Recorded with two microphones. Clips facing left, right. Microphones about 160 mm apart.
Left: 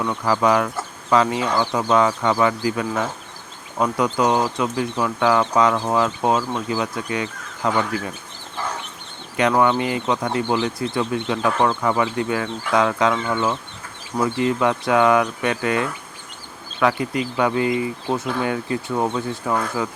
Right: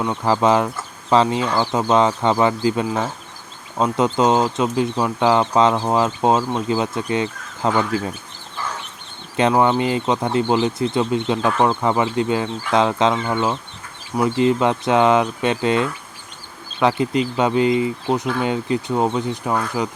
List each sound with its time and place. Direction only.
0.0 s speech: 25° right (ahead or behind)
9.4 s speech: 25° right (ahead or behind)